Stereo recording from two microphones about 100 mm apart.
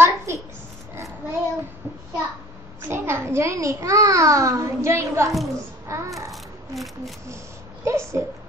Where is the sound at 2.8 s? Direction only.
25° right (ahead or behind).